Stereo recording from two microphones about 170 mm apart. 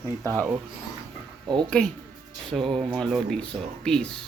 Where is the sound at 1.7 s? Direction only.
5° left (ahead or behind).